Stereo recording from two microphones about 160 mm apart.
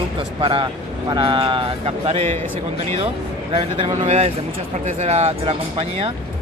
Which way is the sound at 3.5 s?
40° right (ahead or behind).